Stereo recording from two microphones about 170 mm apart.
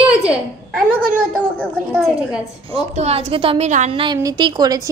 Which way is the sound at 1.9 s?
5° right (ahead or behind).